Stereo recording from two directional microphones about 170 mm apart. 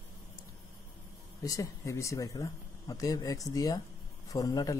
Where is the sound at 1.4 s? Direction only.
20° left (ahead or behind).